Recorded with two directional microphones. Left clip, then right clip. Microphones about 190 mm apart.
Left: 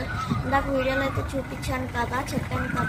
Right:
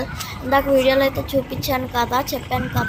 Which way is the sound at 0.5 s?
30° right (ahead or behind).